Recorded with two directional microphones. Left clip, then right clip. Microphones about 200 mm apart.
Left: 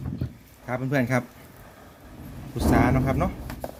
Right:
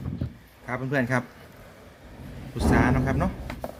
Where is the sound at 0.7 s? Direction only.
35° left (ahead or behind).